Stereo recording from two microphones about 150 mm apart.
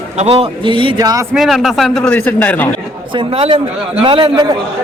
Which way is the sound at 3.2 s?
40° right (ahead or behind).